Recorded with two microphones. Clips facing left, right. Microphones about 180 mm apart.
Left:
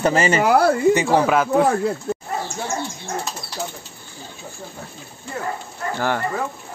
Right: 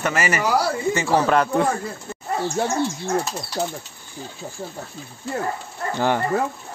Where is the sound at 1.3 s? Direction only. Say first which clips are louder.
Left 2 dB; 5° left (ahead or behind).